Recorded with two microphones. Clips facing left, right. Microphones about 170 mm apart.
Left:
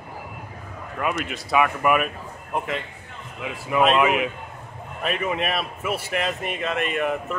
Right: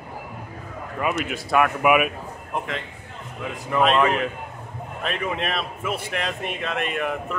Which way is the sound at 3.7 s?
5° left (ahead or behind).